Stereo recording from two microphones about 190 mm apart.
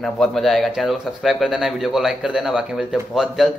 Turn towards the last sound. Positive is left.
turn(degrees=0)  # may be behind; listen again after turning